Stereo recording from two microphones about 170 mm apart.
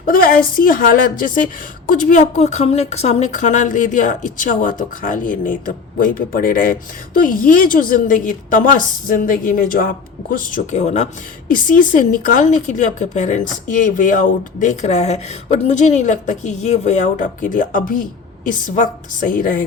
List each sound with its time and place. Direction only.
0.0 s a woman's voice: 55° left (ahead or behind)